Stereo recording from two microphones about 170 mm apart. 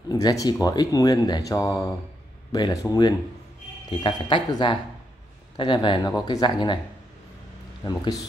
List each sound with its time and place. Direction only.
0.1 s speech: 20° left (ahead or behind)
7.8 s speech: 20° left (ahead or behind)